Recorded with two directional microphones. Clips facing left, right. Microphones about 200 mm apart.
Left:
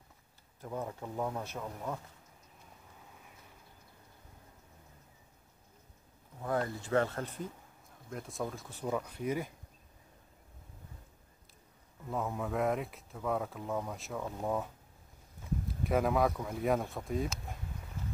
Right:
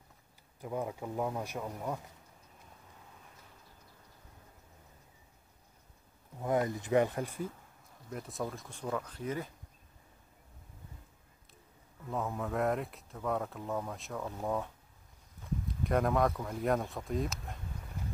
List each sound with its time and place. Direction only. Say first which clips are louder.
0.6 s speech: right 2 dB; 10° right (ahead or behind)
6.4 s speech: right 3 dB; 20° right (ahead or behind); by 9.5 s 10° left (ahead or behind)
12.1 s speech: even; centre (ahead or behind)
15.8 s speech: even; 5° left (ahead or behind)